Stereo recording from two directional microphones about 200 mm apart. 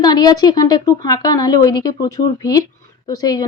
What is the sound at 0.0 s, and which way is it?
A woman's voice, 20° left (ahead or behind).